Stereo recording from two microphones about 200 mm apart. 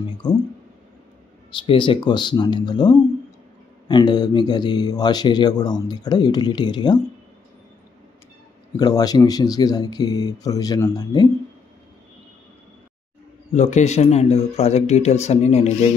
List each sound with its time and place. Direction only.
1.7 s speech: 25° left (ahead or behind)
8.7 s speech: 20° left (ahead or behind)
13.5 s speech: 35° left (ahead or behind)